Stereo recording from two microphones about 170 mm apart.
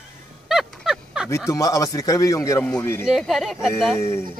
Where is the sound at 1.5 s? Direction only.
20° left (ahead or behind).